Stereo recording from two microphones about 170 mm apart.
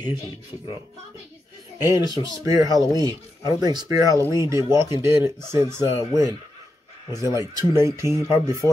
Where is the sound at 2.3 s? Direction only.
20° right (ahead or behind).